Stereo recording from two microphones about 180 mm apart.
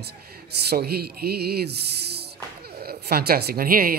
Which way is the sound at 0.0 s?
60° right (ahead or behind).